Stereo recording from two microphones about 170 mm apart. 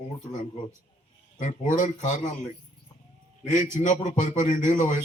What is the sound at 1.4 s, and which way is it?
Speech, 50° left (ahead or behind).